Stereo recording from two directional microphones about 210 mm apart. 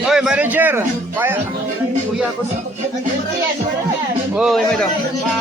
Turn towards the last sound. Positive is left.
turn(degrees=0)  # may be behind; listen again after turning